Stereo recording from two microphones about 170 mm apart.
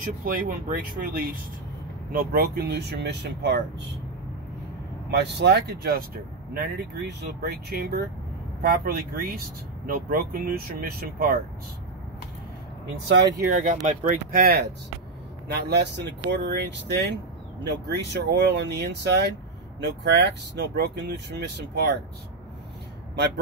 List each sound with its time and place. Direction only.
0.2 s speech: 55° right (ahead or behind)
2.1 s speech: 65° right (ahead or behind); by 3.6 s 85° right
5.1 s speech: 75° right (ahead or behind); by 11.3 s 60° right (ahead or behind)
13.5 s speech: 50° right (ahead or behind); by 22.0 s 90° right
23.1 s speech: 85° right